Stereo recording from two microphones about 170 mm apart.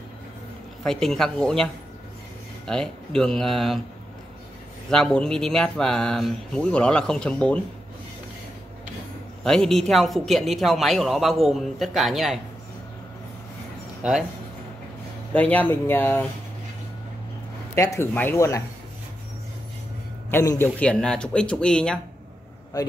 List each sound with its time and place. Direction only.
0.8 s speech: 5° left (ahead or behind)
4.8 s speech: 5° left (ahead or behind)
9.4 s speech: 5° left (ahead or behind)
14.0 s speech: 5° right (ahead or behind)
15.3 s speech: 10° left (ahead or behind)
17.7 s speech: 20° left (ahead or behind)
20.2 s speech: 15° left (ahead or behind)